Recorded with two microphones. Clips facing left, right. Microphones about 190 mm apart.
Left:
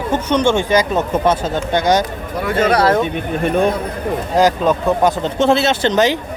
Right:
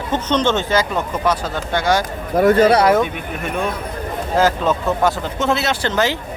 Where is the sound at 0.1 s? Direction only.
10° left (ahead or behind).